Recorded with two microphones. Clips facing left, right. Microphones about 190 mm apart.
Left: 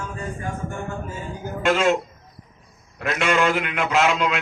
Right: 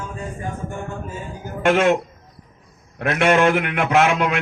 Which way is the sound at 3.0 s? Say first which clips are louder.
Right 5 dB; 55° right (ahead or behind).